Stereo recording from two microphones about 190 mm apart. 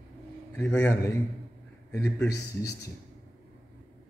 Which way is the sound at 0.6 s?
10° left (ahead or behind).